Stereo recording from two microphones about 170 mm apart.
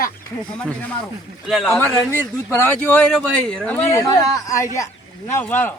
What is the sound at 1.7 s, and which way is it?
A man's voice, 15° left (ahead or behind).